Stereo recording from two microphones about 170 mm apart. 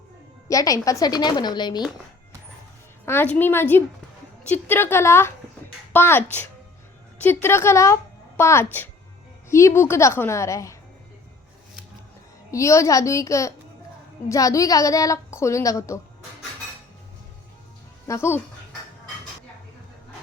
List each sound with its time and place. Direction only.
0.4 s a woman's voice: 20° left (ahead or behind)
3.1 s a woman's voice: 10° left (ahead or behind)
12.5 s a woman's voice: 20° left (ahead or behind)
18.1 s a woman's voice: 15° left (ahead or behind)